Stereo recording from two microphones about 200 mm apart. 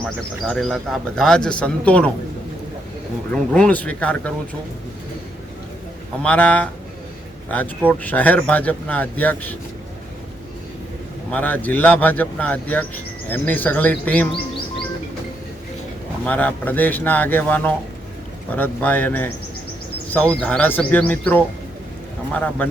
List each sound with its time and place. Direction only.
0.0 s speech: 5° left (ahead or behind)
3.3 s speech: 5° left (ahead or behind)
6.2 s speech: 5° left (ahead or behind)
7.9 s speech: 10° left (ahead or behind)
11.3 s speech: 10° left (ahead or behind)
16.2 s speech: 5° left (ahead or behind)